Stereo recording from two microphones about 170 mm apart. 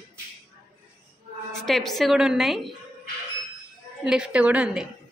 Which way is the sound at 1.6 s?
Centre (ahead or behind).